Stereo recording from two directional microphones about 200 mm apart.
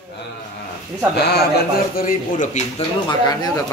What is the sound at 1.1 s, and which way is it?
Speech, 55° left (ahead or behind).